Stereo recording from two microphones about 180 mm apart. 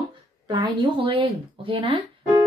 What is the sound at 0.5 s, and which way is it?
A woman's voice, 25° right (ahead or behind).